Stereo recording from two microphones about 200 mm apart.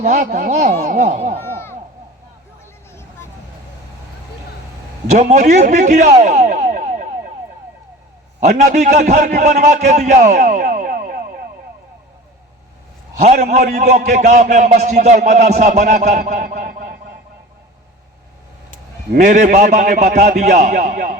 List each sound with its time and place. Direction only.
0.0 s a man's voice: 35° right (ahead or behind)
5.1 s a man's voice: 35° right (ahead or behind)
8.4 s a man's voice: 35° right (ahead or behind)
13.2 s a man's voice: 35° right (ahead or behind)
19.1 s a man's voice: 40° right (ahead or behind)